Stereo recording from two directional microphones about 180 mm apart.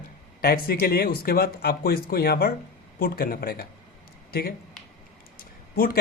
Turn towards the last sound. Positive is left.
turn(degrees=55)  # may be behind; listen again after turning